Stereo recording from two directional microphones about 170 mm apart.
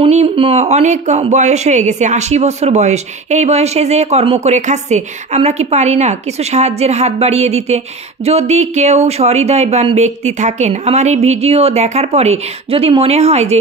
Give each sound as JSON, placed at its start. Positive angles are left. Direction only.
{"t": 0.0, "sound": "a man's voice", "side_deg": -35}